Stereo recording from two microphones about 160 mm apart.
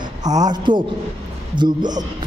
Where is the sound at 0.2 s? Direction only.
25° right (ahead or behind).